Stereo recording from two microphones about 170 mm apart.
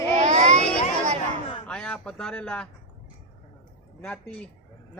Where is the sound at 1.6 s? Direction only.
5° left (ahead or behind).